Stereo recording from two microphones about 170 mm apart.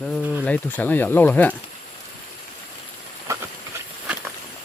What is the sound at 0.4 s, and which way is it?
Speech, 10° left (ahead or behind).